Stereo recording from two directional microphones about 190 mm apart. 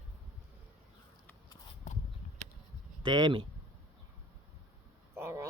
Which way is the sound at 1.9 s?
40° left (ahead or behind).